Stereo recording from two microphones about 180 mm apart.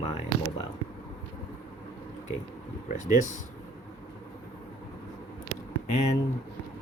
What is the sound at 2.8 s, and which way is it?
Speech, 45° left (ahead or behind).